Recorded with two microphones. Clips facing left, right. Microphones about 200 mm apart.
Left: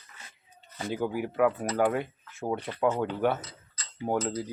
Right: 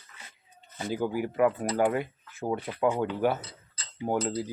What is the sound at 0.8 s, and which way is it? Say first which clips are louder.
Speech: right 1 dB; centre (ahead or behind).